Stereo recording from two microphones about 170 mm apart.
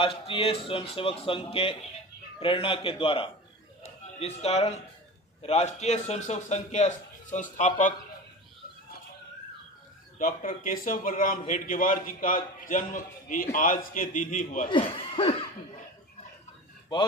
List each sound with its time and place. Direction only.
0.0 s a man's voice: 30° left (ahead or behind); by 7.9 s 50° left (ahead or behind)
10.1 s a man's voice: 55° left (ahead or behind)
14.7 s speech: 30° left (ahead or behind)